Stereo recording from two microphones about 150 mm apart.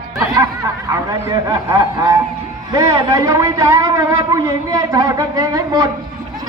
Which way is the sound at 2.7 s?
20° right (ahead or behind).